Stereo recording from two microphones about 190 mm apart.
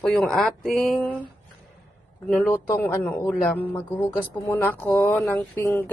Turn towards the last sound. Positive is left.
turn(degrees=10)  # may be behind; listen again after turning